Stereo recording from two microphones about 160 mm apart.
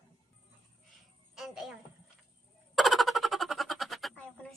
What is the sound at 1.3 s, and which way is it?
Music, centre (ahead or behind).